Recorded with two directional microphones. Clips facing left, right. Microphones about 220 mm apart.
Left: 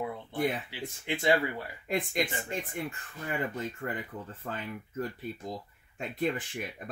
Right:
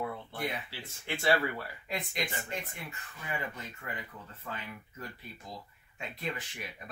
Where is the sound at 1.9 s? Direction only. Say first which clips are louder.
Left 7 dB; 50° left (ahead or behind).